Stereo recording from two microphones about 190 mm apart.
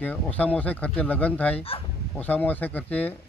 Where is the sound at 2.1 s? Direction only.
10° left (ahead or behind).